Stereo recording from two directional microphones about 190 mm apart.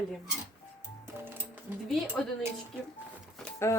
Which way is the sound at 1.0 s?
10° right (ahead or behind).